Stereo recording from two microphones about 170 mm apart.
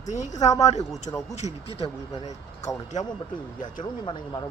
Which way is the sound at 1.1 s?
30° left (ahead or behind).